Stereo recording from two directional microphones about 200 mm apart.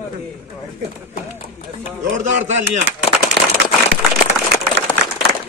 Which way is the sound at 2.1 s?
35° right (ahead or behind).